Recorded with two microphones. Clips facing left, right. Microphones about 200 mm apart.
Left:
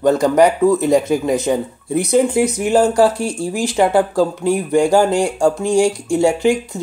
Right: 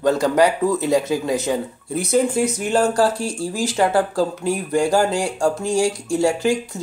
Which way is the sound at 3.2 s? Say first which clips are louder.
Left 3 dB; 55° left (ahead or behind).